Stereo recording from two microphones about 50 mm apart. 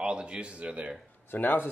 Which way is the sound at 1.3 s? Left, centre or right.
Left.